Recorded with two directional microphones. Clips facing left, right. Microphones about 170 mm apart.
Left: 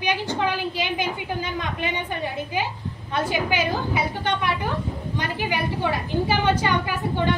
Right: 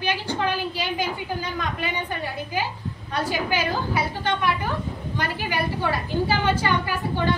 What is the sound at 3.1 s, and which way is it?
A woman's voice, 20° left (ahead or behind).